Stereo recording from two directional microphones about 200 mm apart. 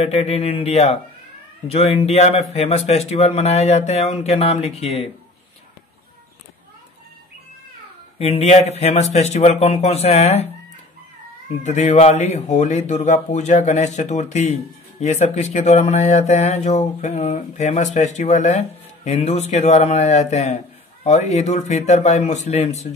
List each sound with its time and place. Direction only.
0.0 s speech: 30° left (ahead or behind)
8.2 s speech: 30° left (ahead or behind)
11.6 s speech: 35° left (ahead or behind)